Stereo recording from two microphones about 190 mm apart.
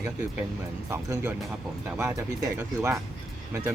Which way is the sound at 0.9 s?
10° right (ahead or behind).